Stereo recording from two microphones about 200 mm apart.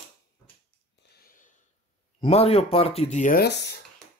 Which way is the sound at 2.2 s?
30° left (ahead or behind).